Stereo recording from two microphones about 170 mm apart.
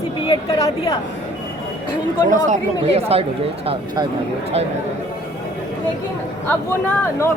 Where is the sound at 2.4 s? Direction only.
35° right (ahead or behind).